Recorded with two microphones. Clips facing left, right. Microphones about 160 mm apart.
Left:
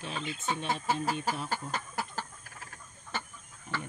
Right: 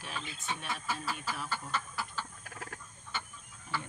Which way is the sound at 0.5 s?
30° left (ahead or behind).